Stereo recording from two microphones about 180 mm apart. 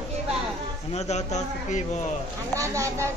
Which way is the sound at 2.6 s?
15° right (ahead or behind).